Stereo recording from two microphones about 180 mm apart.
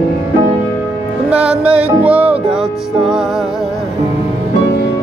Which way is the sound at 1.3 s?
5° right (ahead or behind).